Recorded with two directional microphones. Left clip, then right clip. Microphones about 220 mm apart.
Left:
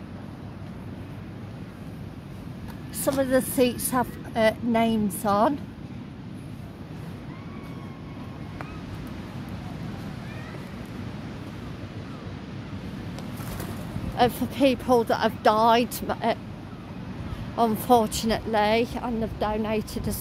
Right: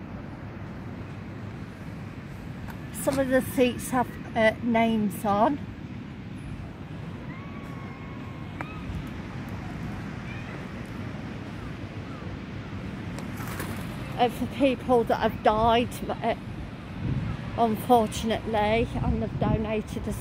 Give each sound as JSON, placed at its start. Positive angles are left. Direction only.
{"t": 3.1, "sound": "a woman's voice", "side_deg": 5}
{"t": 14.1, "sound": "speech", "side_deg": 15}
{"t": 17.6, "sound": "speech", "side_deg": 10}